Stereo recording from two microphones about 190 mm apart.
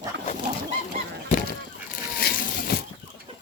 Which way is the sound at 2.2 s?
55° left (ahead or behind).